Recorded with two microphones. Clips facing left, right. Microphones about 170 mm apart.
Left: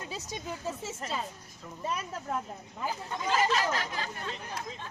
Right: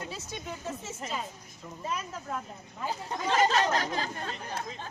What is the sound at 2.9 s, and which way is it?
Speech, 35° right (ahead or behind).